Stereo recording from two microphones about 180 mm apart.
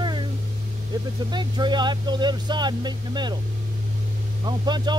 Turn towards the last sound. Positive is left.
turn(degrees=-25)  # may be behind; listen again after turning